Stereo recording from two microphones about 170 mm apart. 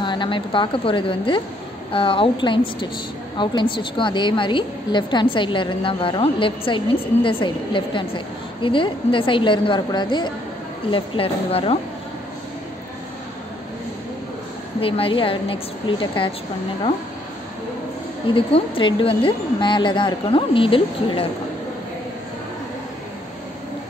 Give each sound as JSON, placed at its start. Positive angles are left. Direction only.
{"t": 0.0, "sound": "a woman's voice", "side_deg": 25}
{"t": 14.8, "sound": "a woman's voice", "side_deg": 35}
{"t": 18.3, "sound": "a woman's voice", "side_deg": 30}